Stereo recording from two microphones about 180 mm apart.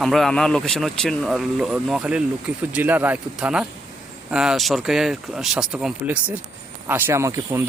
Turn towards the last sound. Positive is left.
turn(degrees=-15)  # may be behind; listen again after turning